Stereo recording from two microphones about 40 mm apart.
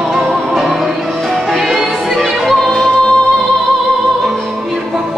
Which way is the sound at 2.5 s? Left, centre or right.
Centre.